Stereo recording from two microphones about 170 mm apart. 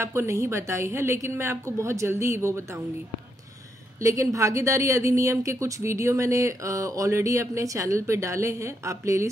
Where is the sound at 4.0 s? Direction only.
20° right (ahead or behind).